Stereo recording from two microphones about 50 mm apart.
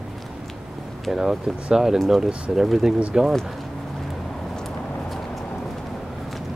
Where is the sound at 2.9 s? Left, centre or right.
Right.